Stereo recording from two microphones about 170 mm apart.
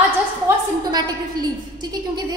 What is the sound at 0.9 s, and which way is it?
A woman's voice, 25° right (ahead or behind).